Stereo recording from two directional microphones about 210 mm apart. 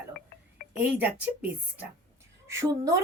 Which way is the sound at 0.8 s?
10° right (ahead or behind).